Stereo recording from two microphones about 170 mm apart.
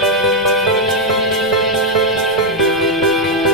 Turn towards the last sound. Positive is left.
turn(degrees=0)  # may be behind; listen again after turning